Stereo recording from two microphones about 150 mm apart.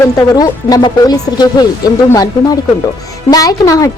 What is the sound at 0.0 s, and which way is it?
A woman's voice, 25° left (ahead or behind).